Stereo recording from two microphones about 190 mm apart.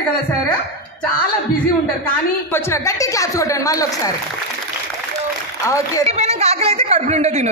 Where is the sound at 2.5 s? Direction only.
15° left (ahead or behind).